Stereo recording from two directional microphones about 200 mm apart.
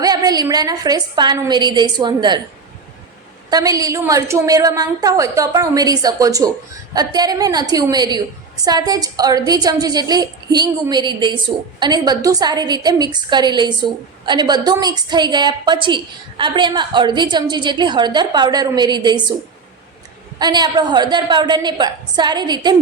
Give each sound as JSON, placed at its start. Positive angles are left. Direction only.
{"t": 0.0, "sound": "a woman's voice", "side_deg": -20}
{"t": 3.5, "sound": "a woman's voice", "side_deg": -15}
{"t": 20.4, "sound": "a woman's voice", "side_deg": -20}